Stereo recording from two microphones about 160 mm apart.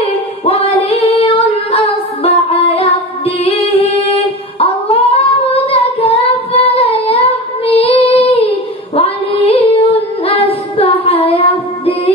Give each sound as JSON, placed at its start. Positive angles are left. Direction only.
{"t": 0.5, "sound": "singing", "side_deg": 35}
{"t": 2.2, "sound": "music", "side_deg": 35}